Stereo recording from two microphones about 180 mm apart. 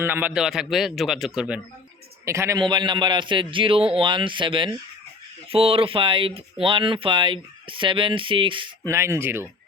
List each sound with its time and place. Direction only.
0.0 s speech: 10° right (ahead or behind)
2.2 s speech: 15° right (ahead or behind)
8.9 s speech: 15° right (ahead or behind)